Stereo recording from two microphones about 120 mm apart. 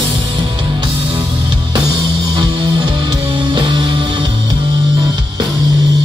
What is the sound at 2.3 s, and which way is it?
Music, 35° right (ahead or behind).